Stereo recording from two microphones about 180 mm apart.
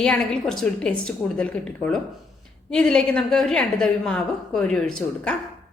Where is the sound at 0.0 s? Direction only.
5° left (ahead or behind).